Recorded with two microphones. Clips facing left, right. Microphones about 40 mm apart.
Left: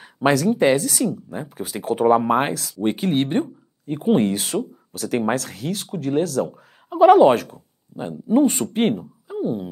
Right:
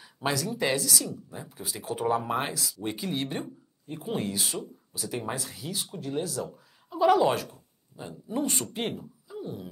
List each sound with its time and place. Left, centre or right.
0.0 s speech: left